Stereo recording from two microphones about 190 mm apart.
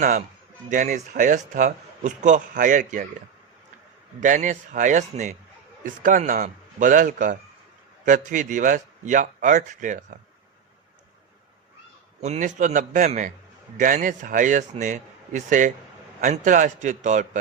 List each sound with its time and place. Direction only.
0.0 s a man's voice: 40° right (ahead or behind)
4.2 s a man's voice: 40° right (ahead or behind)
12.2 s speech: 40° right (ahead or behind)